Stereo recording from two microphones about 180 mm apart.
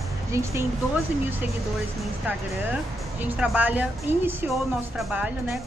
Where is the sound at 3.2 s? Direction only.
5° right (ahead or behind).